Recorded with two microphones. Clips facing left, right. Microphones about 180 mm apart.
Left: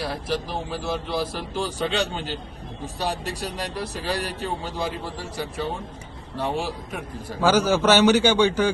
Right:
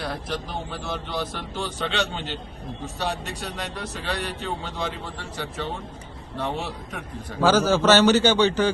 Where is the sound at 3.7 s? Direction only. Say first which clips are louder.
Left 3 dB; 10° left (ahead or behind).